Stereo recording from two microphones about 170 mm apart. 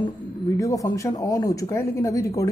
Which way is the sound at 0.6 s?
20° left (ahead or behind).